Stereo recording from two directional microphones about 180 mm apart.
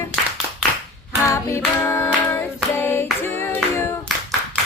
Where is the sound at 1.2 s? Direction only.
15° left (ahead or behind).